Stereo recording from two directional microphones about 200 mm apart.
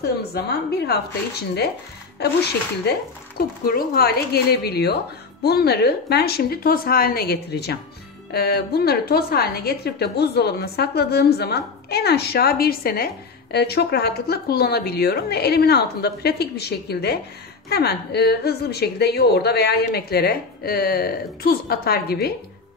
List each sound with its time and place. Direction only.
0.0 s a woman's voice: 50° left (ahead or behind)
2.8 s a woman's voice: 50° left (ahead or behind)